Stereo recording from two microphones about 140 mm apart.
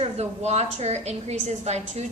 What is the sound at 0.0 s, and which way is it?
A woman's voice, 50° right (ahead or behind).